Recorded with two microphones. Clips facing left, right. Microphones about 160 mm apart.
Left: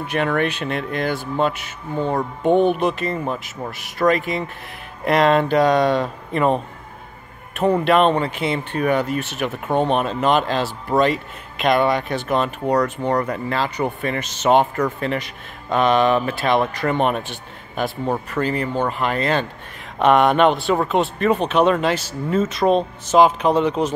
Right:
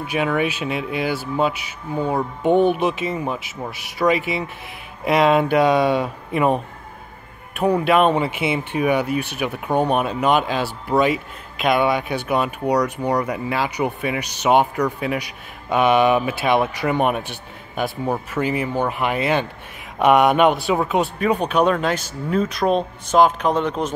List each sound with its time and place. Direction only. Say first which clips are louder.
0.0 s speech: even; 5° right (ahead or behind)
12.8 s speech: even; 15° right (ahead or behind)
13.1 s speech: even; centre (ahead or behind)